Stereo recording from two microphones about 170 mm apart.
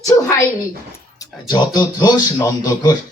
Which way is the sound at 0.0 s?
20° left (ahead or behind).